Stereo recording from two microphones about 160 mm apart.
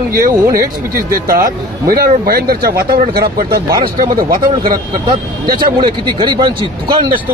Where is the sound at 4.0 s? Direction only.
65° right (ahead or behind).